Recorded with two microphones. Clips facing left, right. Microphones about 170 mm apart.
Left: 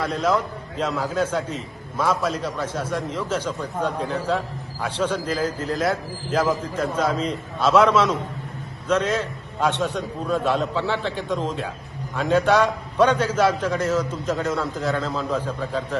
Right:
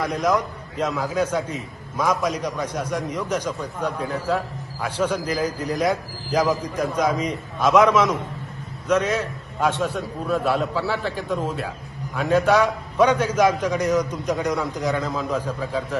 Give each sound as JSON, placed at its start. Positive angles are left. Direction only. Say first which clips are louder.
{"t": 0.0, "sound": "a man's voice", "louder": "even", "side_deg": -10}
{"t": 6.3, "sound": "a man's voice", "louder": "right 1 dB", "side_deg": 0}
{"t": 6.8, "sound": "a man's voice", "louder": "right 1 dB", "side_deg": -10}